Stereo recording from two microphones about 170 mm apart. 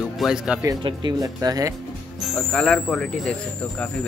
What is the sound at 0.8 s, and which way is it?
Speech, 25° right (ahead or behind).